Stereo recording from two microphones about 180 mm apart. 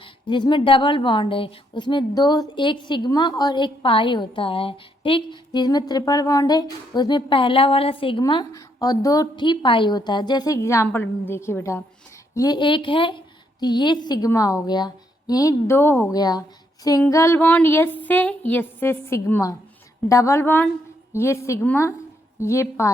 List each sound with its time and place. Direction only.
0.0 s a woman's voice: 25° left (ahead or behind)